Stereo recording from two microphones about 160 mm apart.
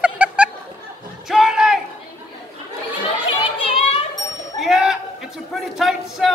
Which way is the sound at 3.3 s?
35° left (ahead or behind).